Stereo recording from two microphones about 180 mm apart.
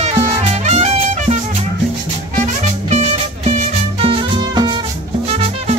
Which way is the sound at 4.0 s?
30° right (ahead or behind).